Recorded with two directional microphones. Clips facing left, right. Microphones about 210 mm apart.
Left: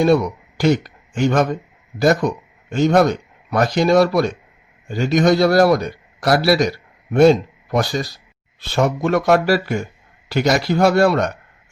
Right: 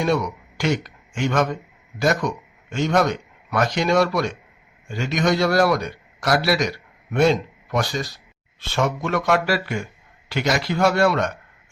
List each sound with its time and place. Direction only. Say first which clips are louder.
0.0 s a man's voice: left 6 dB; 35° left (ahead or behind)